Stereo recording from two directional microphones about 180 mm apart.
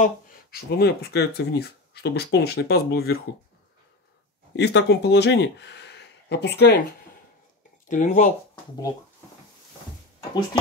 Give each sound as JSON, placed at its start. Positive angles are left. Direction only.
{"t": 0.0, "sound": "speech", "side_deg": 60}
{"t": 4.6, "sound": "speech", "side_deg": 70}
{"t": 7.9, "sound": "speech", "side_deg": 45}